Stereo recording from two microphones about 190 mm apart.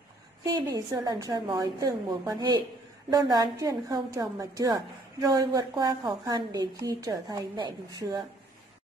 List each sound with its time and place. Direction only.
0.5 s a woman's voice: 20° right (ahead or behind)